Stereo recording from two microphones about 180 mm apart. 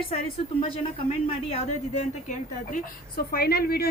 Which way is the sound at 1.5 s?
35° left (ahead or behind).